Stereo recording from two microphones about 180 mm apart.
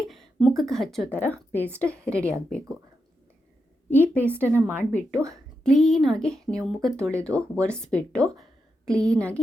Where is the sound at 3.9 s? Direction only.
10° left (ahead or behind).